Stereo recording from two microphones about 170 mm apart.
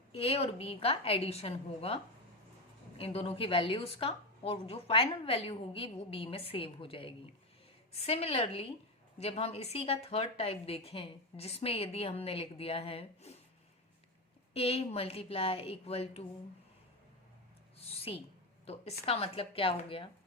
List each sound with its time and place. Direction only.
0.1 s speech: 35° left (ahead or behind)
3.0 s speech: 35° left (ahead or behind)
14.5 s speech: 35° left (ahead or behind)
17.7 s a sound: 35° left (ahead or behind)
18.6 s speech: 35° left (ahead or behind)